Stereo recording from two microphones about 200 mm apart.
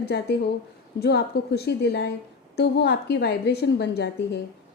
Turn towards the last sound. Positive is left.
turn(degrees=60)  # may be behind; listen again after turning